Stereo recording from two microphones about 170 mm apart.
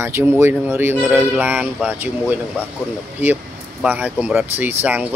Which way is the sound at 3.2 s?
10° right (ahead or behind).